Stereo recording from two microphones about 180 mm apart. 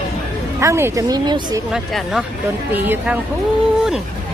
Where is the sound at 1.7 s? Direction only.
5° right (ahead or behind).